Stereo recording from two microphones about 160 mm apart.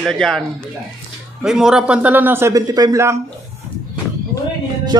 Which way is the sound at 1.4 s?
5° right (ahead or behind).